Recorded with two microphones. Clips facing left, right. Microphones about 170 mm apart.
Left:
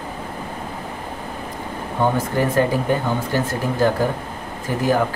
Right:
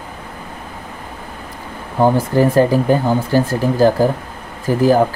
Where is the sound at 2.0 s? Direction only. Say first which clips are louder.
Right 6 dB; 35° right (ahead or behind).